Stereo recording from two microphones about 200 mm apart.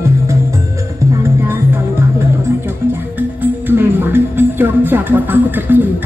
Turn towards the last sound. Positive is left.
turn(degrees=-10)  # may be behind; listen again after turning